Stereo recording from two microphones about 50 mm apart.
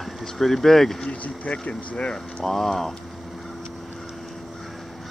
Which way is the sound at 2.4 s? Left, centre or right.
Centre.